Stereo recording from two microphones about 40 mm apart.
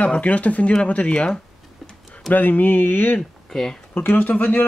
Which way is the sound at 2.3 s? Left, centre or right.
Left.